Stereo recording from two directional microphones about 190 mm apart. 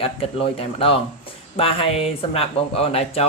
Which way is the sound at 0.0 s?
30° left (ahead or behind).